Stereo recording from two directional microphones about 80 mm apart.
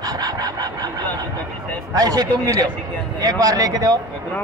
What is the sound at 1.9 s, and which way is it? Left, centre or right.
A man's voice, right.